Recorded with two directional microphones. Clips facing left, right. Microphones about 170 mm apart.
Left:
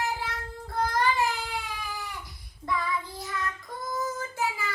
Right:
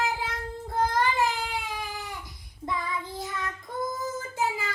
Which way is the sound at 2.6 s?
20° right (ahead or behind).